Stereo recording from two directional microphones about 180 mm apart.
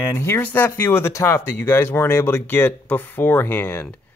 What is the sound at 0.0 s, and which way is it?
Speech, 15° left (ahead or behind).